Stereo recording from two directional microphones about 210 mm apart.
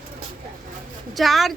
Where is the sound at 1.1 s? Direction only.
Centre (ahead or behind).